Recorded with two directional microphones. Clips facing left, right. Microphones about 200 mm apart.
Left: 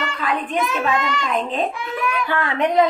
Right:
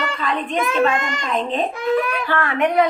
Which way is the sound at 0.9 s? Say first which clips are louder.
Even; 45° right (ahead or behind).